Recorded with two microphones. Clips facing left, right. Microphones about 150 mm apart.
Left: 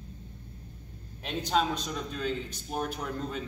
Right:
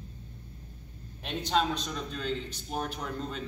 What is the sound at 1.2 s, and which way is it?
A man's voice, 5° left (ahead or behind).